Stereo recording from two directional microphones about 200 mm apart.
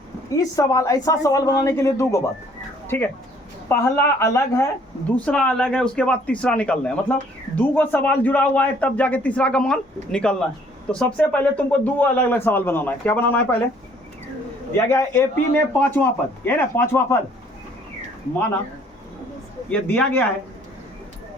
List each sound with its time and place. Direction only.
0.3 s a man's voice: 15° left (ahead or behind)
14.8 s speech: 10° left (ahead or behind)
19.7 s speech: 10° left (ahead or behind)